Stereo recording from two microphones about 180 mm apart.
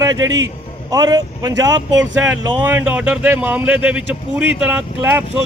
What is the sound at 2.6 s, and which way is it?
Speech, 10° right (ahead or behind).